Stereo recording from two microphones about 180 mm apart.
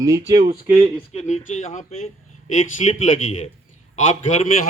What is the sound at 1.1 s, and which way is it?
Speech, 40° left (ahead or behind).